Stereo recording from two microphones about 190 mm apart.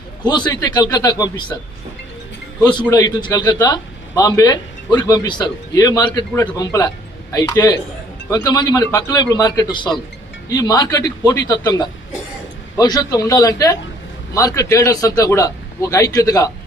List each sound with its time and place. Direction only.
0.3 s a man's voice: 20° left (ahead or behind)
3.3 s a man's voice: 20° left (ahead or behind)